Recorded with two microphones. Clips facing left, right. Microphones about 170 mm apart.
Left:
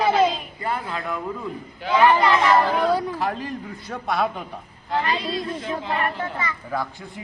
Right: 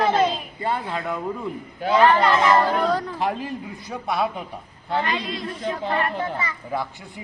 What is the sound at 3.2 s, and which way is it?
Speech, 20° right (ahead or behind).